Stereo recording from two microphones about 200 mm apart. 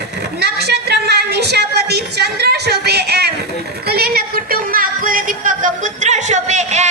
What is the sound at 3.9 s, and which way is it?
Music, 50° right (ahead or behind).